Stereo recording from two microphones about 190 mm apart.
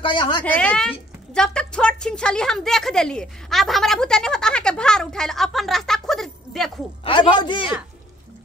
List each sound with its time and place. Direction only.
0.0 s a man's voice: 25° left (ahead or behind)
0.4 s a woman's voice: 5° left (ahead or behind)
7.1 s a man's voice: 25° left (ahead or behind)